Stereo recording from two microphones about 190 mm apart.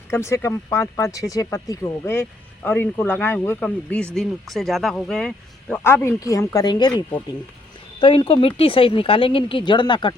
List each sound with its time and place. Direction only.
0.1 s a woman's voice: 15° left (ahead or behind)